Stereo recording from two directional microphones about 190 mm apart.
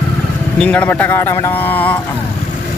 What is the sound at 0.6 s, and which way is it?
Speech, 10° left (ahead or behind).